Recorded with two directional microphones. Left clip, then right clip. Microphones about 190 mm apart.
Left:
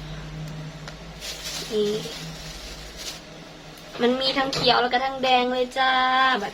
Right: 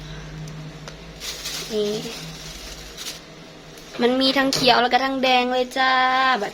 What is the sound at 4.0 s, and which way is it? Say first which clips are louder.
Speech: right 3 dB; 50° right (ahead or behind).